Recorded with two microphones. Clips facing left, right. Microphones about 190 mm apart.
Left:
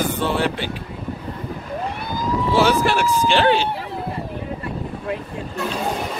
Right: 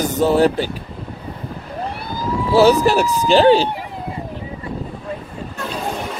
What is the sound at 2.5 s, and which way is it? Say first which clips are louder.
Speech: right 6 dB; 40° right (ahead or behind).